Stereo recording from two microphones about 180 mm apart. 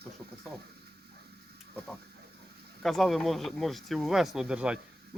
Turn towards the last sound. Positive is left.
turn(degrees=-5)  # may be behind; listen again after turning